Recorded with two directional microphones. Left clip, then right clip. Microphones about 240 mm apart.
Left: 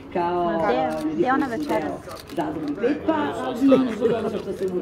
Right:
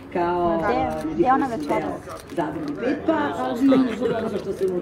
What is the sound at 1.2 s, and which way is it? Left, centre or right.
Speech, centre.